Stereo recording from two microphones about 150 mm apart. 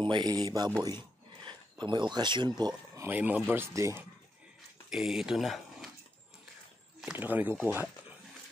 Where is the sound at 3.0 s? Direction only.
10° right (ahead or behind).